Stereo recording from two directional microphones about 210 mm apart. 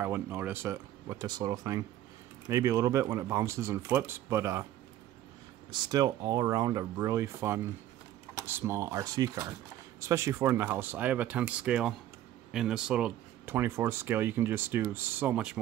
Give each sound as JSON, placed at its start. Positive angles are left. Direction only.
{"t": 0.0, "sound": "speech", "side_deg": -10}
{"t": 5.7, "sound": "speech", "side_deg": -20}